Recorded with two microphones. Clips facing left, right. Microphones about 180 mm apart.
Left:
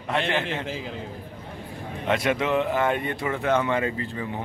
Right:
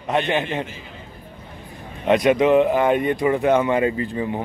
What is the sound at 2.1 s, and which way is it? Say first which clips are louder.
Speech: right 8 dB; 20° right (ahead or behind).